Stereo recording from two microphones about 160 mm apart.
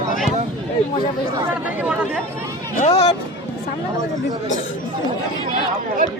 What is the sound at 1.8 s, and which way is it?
Chatter, 5° right (ahead or behind).